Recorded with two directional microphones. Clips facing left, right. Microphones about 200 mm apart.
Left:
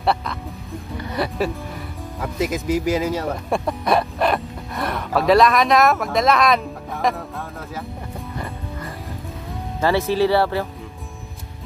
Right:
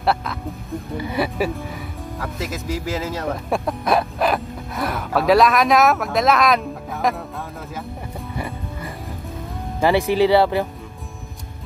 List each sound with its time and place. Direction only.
0.0 s speech: centre (ahead or behind)
2.3 s speech: 15° left (ahead or behind)
3.4 s speech: centre (ahead or behind)
9.8 s speech: 15° right (ahead or behind)